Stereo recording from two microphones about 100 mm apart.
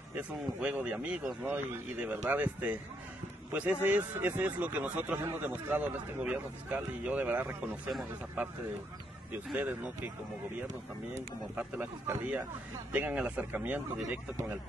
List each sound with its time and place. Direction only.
0.6 s a man's voice: 15° right (ahead or behind)
9.5 s a man's voice: 15° right (ahead or behind)
11.5 s a man's voice: 15° right (ahead or behind)